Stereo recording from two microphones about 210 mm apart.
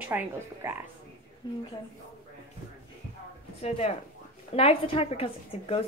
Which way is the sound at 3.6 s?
30° left (ahead or behind).